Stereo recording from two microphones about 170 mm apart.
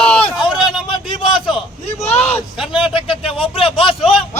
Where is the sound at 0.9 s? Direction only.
30° left (ahead or behind).